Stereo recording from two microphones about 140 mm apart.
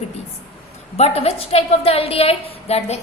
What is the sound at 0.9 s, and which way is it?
A woman's voice, 50° left (ahead or behind).